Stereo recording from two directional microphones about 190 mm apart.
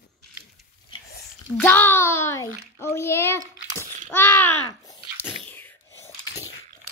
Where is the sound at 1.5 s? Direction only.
10° left (ahead or behind).